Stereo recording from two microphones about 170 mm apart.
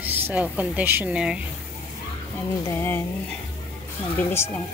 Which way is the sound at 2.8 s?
15° left (ahead or behind).